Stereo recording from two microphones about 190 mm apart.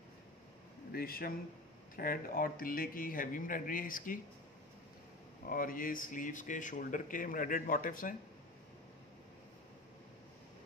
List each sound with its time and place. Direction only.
0.9 s speech: 50° left (ahead or behind)
5.5 s speech: 45° left (ahead or behind)